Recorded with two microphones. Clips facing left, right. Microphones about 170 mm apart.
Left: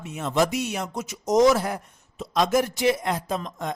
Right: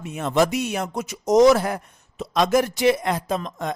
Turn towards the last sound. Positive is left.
turn(degrees=-75)  # may be behind; listen again after turning